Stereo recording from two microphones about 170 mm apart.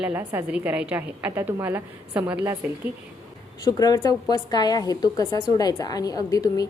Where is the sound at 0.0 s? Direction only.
10° right (ahead or behind).